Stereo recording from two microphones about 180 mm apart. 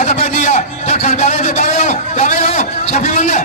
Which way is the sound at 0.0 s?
40° left (ahead or behind).